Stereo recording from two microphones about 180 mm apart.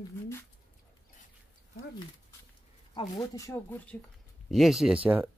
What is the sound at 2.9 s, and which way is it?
Speech, 20° left (ahead or behind).